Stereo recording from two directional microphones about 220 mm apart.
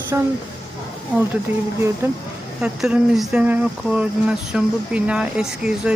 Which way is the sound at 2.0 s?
10° right (ahead or behind).